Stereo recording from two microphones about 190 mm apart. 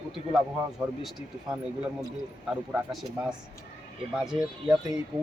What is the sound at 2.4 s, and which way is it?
Speech, 5° right (ahead or behind).